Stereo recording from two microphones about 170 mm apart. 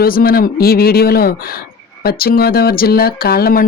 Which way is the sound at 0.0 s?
60° left (ahead or behind).